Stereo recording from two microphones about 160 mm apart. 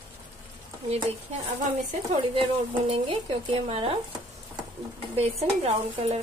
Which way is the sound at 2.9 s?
35° right (ahead or behind).